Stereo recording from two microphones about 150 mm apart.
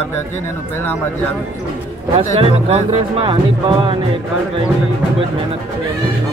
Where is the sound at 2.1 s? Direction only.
40° right (ahead or behind).